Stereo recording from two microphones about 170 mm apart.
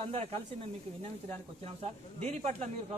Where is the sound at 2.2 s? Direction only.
40° right (ahead or behind).